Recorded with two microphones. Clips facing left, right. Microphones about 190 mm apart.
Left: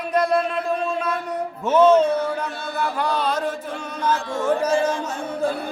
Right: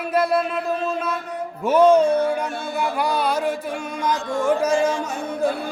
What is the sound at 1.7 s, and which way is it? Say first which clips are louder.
Music: right 1 dB; 10° right (ahead or behind).